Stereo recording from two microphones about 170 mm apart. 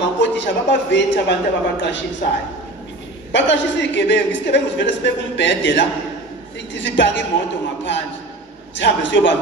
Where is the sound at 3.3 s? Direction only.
90° left.